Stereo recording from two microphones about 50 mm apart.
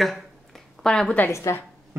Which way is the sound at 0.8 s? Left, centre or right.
Centre.